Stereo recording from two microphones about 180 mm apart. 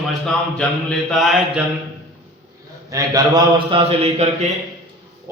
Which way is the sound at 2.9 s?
20° right (ahead or behind).